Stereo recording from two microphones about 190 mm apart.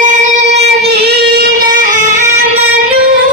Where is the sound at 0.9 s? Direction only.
55° right (ahead or behind).